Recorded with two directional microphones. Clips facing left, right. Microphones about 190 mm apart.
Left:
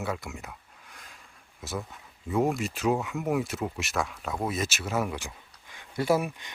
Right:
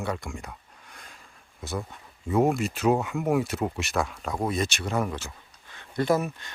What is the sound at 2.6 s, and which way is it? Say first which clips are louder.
Speech: right 3 dB; centre (ahead or behind).